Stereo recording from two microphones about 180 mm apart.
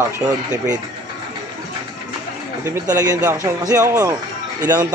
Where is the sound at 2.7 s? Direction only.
20° right (ahead or behind).